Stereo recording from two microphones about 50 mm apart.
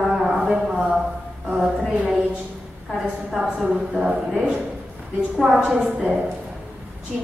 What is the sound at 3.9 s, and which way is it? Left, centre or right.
Speech, centre.